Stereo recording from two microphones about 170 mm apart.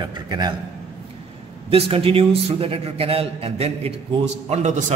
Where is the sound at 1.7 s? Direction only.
35° right (ahead or behind).